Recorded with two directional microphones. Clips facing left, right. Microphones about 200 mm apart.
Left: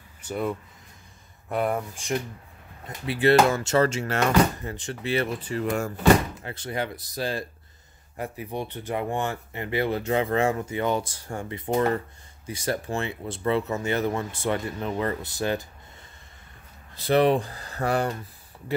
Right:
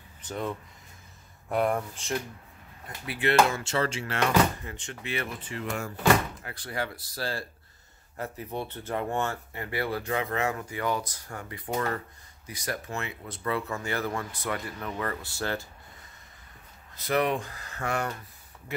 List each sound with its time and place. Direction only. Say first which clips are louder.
0.2 s speech: left 4 dB; 10° left (ahead or behind)
3.1 s speech: left 5 dB; 35° left (ahead or behind)
6.4 s speech: left 4 dB; 25° left (ahead or behind)
16.9 s speech: left 6 dB; 30° left (ahead or behind)